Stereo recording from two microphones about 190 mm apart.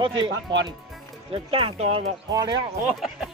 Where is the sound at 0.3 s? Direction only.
75° right (ahead or behind).